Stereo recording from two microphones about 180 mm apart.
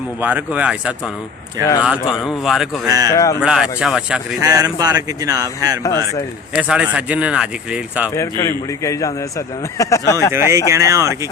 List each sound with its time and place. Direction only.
0.2 s speech: 10° right (ahead or behind)
2.8 s speech: 20° right (ahead or behind)
3.1 s a man's voice: 15° left (ahead or behind)
3.4 s speech: 5° right (ahead or behind)
4.4 s speech: 20° right (ahead or behind)
6.6 s speech: 5° right (ahead or behind)
8.1 s a man's voice: 15° left (ahead or behind)
10.3 s speech: 15° right (ahead or behind)